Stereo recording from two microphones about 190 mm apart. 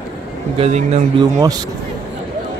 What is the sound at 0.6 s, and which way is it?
Speech, 35° right (ahead or behind).